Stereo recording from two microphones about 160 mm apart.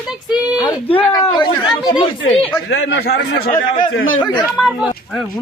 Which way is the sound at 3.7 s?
30° left (ahead or behind).